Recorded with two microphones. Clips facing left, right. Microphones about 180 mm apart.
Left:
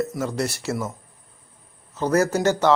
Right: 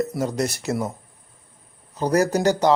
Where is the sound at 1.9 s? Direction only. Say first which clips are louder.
Right 1 dB; 15° right (ahead or behind).